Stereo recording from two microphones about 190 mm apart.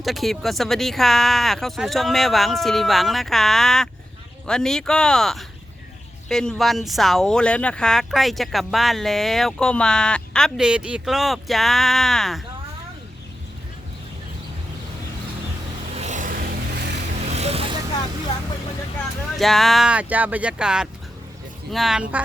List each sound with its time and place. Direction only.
0.0 s speech: centre (ahead or behind)
16.0 s a sound: 40° right (ahead or behind)
17.2 s vehicle: 35° right (ahead or behind)
19.4 s speech: centre (ahead or behind)